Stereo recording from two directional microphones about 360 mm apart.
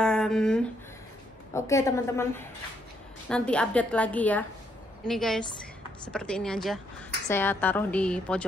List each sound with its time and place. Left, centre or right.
0.0 s a woman's voice: centre